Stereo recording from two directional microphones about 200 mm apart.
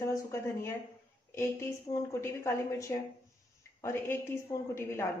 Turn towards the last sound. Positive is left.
turn(degrees=15)  # may be behind; listen again after turning